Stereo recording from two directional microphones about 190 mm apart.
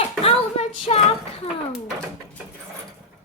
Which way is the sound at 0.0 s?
30° left (ahead or behind).